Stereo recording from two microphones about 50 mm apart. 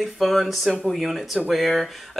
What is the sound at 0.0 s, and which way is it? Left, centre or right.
Speech, centre.